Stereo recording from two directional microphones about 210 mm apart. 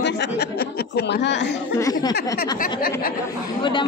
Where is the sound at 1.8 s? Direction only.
15° left (ahead or behind).